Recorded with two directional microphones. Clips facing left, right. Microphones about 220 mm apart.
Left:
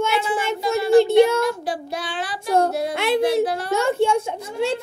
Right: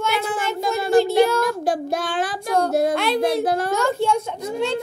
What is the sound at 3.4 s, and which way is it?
Speech, 45° right (ahead or behind).